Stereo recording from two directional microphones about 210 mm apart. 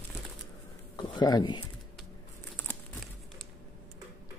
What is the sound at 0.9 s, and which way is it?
Speech, 20° left (ahead or behind).